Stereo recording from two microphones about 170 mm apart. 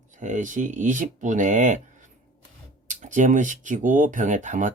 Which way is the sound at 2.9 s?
45° right (ahead or behind).